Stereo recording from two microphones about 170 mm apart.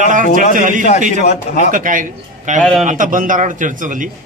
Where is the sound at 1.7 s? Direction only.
50° right (ahead or behind).